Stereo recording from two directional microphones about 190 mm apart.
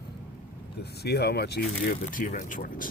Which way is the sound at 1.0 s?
60° left (ahead or behind).